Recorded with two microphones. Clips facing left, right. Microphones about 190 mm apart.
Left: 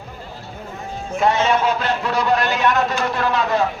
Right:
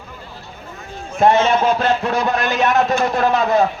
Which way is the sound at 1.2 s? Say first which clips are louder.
Right 4 dB; 50° right (ahead or behind).